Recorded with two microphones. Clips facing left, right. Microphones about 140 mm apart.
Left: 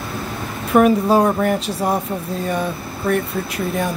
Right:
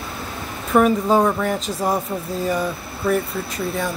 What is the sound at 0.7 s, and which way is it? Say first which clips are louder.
Speech: left 2 dB; 5° left (ahead or behind).